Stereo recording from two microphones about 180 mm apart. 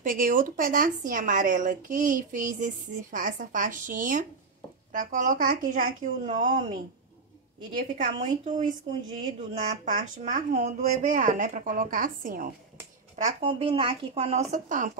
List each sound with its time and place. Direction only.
0.0 s speech: 50° right (ahead or behind)
9.8 s speech: 45° right (ahead or behind)
13.1 s speech: 35° right (ahead or behind)